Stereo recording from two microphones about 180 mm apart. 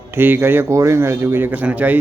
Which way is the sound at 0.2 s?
10° right (ahead or behind).